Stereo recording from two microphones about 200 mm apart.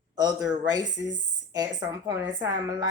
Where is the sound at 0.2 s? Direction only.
20° right (ahead or behind).